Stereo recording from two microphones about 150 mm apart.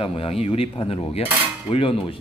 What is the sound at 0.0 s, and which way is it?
A man's voice, 40° left (ahead or behind).